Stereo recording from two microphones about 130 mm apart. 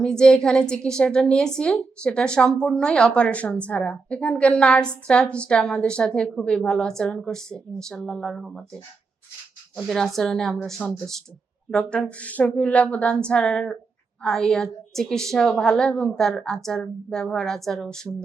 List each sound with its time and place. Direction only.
0.0 s a woman's voice: 5° left (ahead or behind)
9.7 s a woman's voice: centre (ahead or behind)